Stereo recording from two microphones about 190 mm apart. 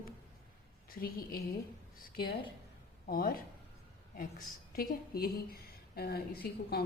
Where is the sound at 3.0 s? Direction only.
50° left (ahead or behind).